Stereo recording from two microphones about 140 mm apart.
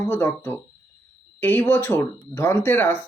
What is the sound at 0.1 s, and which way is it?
Speech, 15° left (ahead or behind).